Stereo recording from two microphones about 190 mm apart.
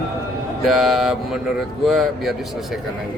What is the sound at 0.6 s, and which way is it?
A man's voice, centre (ahead or behind).